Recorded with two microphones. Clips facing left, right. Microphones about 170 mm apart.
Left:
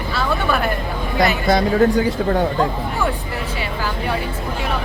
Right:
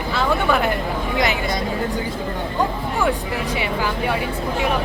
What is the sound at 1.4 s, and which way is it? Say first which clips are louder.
Speech: left 8 dB; 80° left.